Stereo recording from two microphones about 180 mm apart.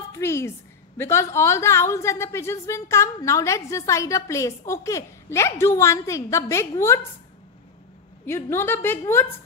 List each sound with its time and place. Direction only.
0.1 s a woman's voice: 15° left (ahead or behind)
8.3 s a woman's voice: 15° left (ahead or behind)